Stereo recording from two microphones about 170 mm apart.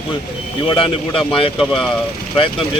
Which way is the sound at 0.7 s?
30° left (ahead or behind).